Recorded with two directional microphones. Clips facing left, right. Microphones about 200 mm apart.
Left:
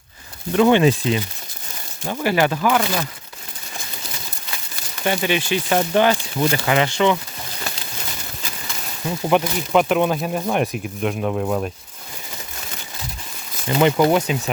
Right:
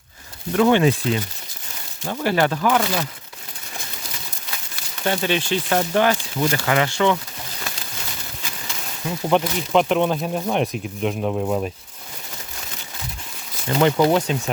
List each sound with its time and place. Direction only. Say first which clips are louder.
0.5 s speech: left 2 dB; 20° left (ahead or behind); by 3.1 s centre (ahead or behind)
5.0 s speech: left 1 dB; 10° left (ahead or behind)
9.4 s speech: left 1 dB; 5° left (ahead or behind)
11.2 s speech: even; 10° right (ahead or behind)
13.7 s speech: left 1 dB; 15° left (ahead or behind)